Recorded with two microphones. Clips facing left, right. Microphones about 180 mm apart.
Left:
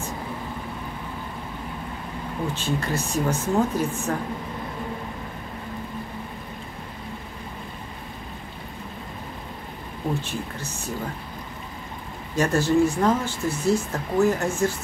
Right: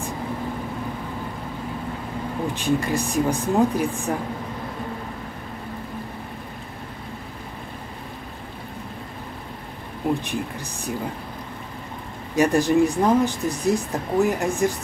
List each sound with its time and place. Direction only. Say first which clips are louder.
2.5 s speech: right 6 dB; 15° right (ahead or behind)
10.2 s speech: right 3 dB; 15° right (ahead or behind)
12.4 s speech: right 2 dB; 15° right (ahead or behind)